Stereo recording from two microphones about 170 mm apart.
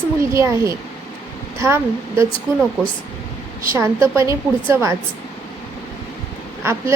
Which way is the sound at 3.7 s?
15° right (ahead or behind).